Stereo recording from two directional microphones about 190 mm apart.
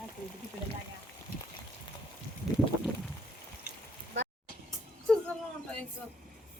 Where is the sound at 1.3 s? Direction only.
55° left (ahead or behind).